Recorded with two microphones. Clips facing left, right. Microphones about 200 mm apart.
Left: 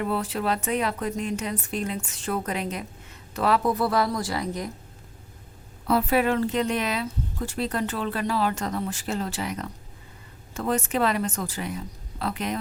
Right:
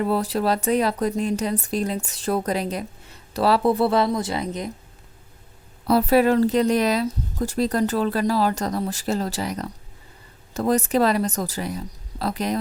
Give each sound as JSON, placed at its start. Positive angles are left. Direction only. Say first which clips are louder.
{"t": 0.0, "sound": "a woman's voice", "louder": "right 5 dB", "side_deg": -40}
{"t": 5.8, "sound": "a woman's voice", "louder": "right 5 dB", "side_deg": -40}